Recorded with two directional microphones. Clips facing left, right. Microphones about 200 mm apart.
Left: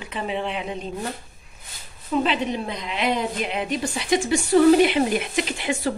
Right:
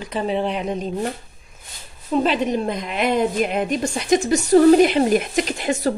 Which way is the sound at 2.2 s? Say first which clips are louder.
Right 4 dB; 45° right (ahead or behind).